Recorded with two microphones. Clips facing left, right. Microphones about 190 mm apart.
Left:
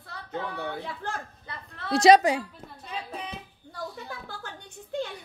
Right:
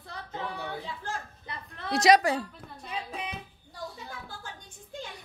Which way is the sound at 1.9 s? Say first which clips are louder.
Left 4 dB; 30° left (ahead or behind).